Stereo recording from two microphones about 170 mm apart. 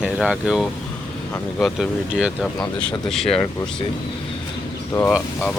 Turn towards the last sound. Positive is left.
turn(degrees=0)  # may be behind; listen again after turning